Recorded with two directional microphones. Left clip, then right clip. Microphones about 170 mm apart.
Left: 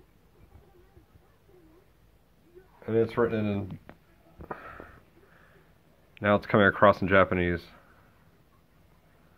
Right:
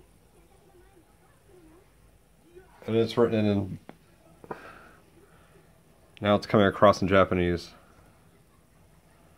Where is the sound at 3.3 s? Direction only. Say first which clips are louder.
Right 4 dB; 55° right (ahead or behind).